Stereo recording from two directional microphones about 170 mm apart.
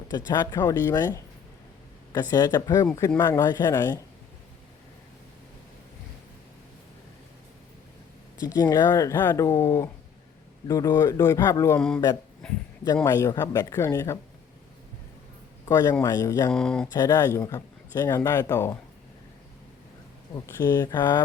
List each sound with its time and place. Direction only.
0.3 s a man's voice: 20° left (ahead or behind)
8.5 s a man's voice: 20° left (ahead or behind)
13.1 s speech: 15° left (ahead or behind)
15.6 s a man's voice: 20° left (ahead or behind)
16.5 s speech: 5° left (ahead or behind)
16.9 s a man's voice: 20° left (ahead or behind)
20.3 s speech: 15° left (ahead or behind)